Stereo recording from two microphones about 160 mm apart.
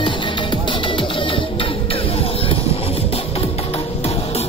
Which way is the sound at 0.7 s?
30° left (ahead or behind).